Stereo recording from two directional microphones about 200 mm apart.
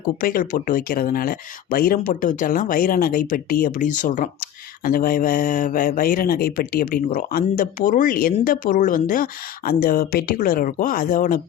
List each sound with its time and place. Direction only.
0.2 s speech: 45° left (ahead or behind)